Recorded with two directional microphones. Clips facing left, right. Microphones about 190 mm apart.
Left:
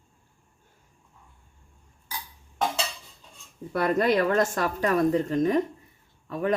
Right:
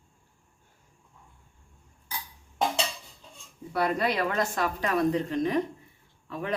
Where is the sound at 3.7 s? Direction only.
50° left (ahead or behind).